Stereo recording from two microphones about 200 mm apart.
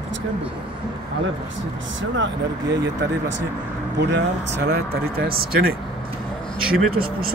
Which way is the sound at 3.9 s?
60° right (ahead or behind).